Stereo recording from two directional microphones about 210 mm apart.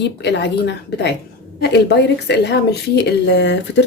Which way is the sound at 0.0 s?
55° left (ahead or behind).